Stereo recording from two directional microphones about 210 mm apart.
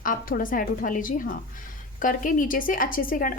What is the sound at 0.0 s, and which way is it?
A woman's voice, 40° left (ahead or behind).